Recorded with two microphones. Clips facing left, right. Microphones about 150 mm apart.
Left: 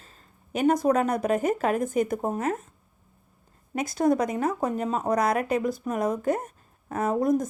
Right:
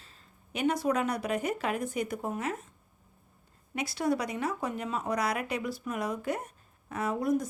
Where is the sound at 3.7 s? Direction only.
45° left (ahead or behind).